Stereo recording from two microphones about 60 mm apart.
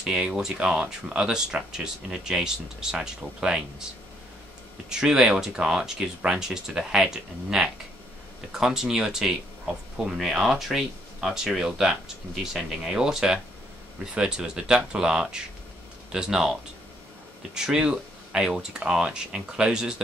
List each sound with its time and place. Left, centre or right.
0.0 s speech: centre
4.8 s speech: centre
17.6 s speech: centre